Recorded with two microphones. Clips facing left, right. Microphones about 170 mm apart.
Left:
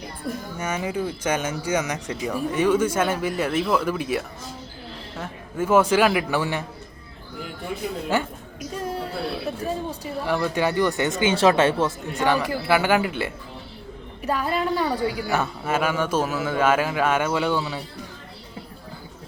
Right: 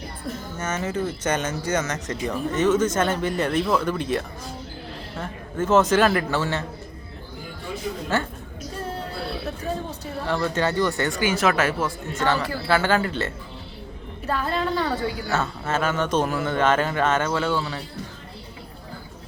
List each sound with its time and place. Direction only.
0.5 s speech: 10° left (ahead or behind)
8.1 s speech: 15° left (ahead or behind)
9.9 s speech: 10° left (ahead or behind); by 11.9 s 30° left (ahead or behind)
12.1 s speech: 15° left (ahead or behind)